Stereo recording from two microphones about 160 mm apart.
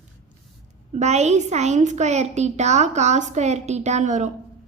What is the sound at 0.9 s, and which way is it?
A woman's voice, 45° right (ahead or behind).